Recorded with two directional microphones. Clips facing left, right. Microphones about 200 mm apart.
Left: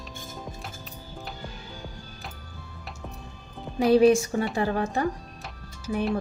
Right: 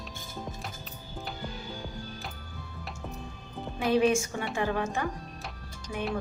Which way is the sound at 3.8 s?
35° left (ahead or behind).